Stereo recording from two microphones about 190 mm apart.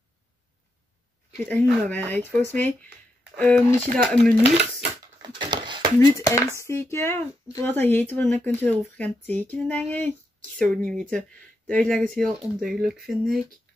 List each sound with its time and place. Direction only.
1.4 s speech: 10° left (ahead or behind)
5.2 s a sound: 25° right (ahead or behind)
5.9 s speech: 15° left (ahead or behind); by 13.4 s centre (ahead or behind)